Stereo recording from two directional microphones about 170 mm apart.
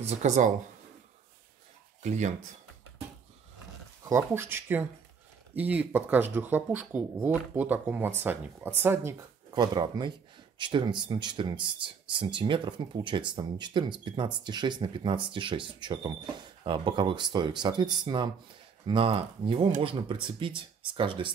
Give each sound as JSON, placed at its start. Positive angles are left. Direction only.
{"t": 0.0, "sound": "speech", "side_deg": -40}
{"t": 2.0, "sound": "speech", "side_deg": -45}
{"t": 4.0, "sound": "speech", "side_deg": -15}
{"t": 9.5, "sound": "speech", "side_deg": -25}